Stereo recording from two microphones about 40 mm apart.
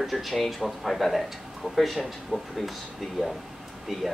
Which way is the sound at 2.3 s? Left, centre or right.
Right.